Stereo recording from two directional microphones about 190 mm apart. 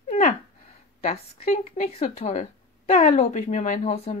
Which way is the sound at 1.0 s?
40° left (ahead or behind).